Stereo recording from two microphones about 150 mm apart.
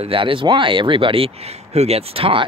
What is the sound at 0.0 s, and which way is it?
Speech, 35° right (ahead or behind).